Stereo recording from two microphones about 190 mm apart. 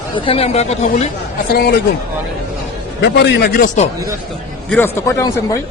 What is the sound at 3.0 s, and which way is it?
Speech, 60° left (ahead or behind).